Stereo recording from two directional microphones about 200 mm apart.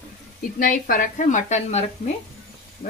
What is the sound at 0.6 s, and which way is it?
A woman's voice, 45° left (ahead or behind).